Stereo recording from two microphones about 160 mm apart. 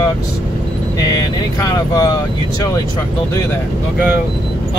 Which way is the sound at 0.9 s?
25° left (ahead or behind).